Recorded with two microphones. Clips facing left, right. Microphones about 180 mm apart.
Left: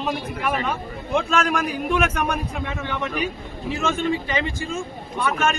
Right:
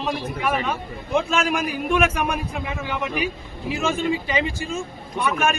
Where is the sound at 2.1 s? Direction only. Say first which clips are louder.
Even; 30° right (ahead or behind).